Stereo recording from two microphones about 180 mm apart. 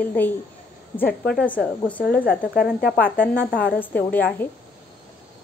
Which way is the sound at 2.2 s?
60° left (ahead or behind).